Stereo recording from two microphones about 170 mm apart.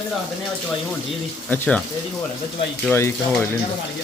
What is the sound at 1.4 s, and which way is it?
Speech, 10° left (ahead or behind).